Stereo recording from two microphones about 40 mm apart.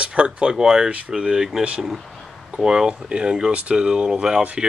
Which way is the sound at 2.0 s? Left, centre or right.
Centre.